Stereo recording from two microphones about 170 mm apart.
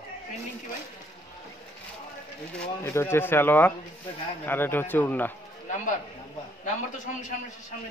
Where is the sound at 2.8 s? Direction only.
15° left (ahead or behind).